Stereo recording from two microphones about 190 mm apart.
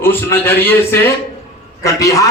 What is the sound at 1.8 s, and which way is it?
Speech, 15° left (ahead or behind).